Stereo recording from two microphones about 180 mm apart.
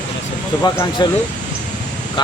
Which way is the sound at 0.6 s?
20° left (ahead or behind).